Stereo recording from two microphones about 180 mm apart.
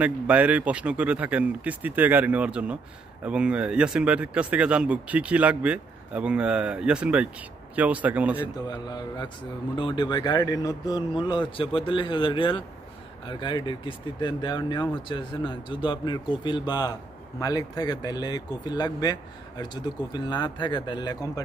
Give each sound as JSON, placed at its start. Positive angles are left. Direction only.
{"t": 0.0, "sound": "speech", "side_deg": -10}
{"t": 8.6, "sound": "speech", "side_deg": 20}